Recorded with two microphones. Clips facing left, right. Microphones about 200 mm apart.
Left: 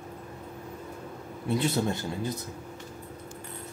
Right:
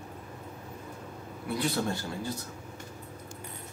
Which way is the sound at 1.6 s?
20° left (ahead or behind).